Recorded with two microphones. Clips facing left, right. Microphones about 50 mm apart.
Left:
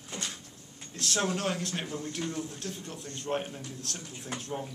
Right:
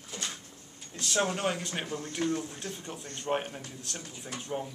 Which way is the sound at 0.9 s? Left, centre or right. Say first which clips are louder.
Right 1 dB; centre.